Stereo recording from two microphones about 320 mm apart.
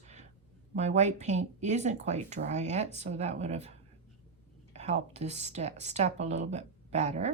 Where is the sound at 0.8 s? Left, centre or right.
Right.